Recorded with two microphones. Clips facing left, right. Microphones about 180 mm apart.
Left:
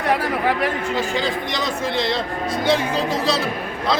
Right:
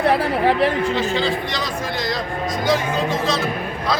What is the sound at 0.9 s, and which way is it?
A man's voice, 15° left (ahead or behind).